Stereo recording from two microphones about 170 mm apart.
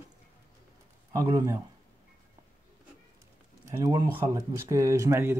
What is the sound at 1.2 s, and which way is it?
Speech, 20° right (ahead or behind).